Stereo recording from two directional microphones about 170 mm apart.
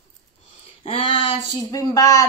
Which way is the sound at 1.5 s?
20° left (ahead or behind).